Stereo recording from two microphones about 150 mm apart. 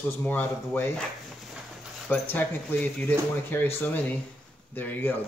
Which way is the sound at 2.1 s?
10° left (ahead or behind).